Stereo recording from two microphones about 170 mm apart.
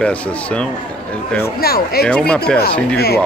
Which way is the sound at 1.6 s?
65° left (ahead or behind).